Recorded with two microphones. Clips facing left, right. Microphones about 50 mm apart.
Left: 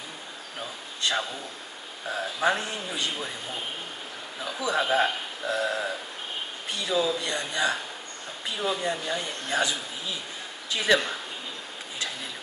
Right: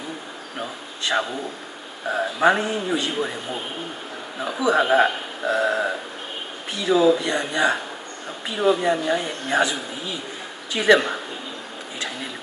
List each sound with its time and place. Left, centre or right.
0.6 s a man's voice: right
4.4 s speech: right
10.7 s speech: right